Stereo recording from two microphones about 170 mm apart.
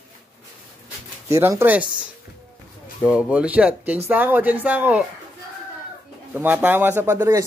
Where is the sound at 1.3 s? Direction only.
15° right (ahead or behind).